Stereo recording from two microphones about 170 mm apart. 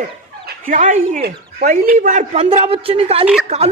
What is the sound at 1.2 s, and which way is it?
Speech, 60° right (ahead or behind).